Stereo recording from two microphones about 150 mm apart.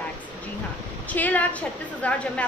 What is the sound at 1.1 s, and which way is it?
A woman's voice, 10° left (ahead or behind).